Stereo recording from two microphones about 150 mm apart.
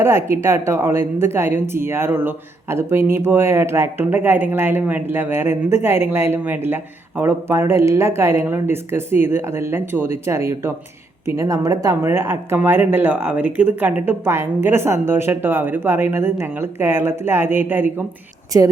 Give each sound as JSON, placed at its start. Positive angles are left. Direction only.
{"t": 0.0, "sound": "a woman's voice", "side_deg": -15}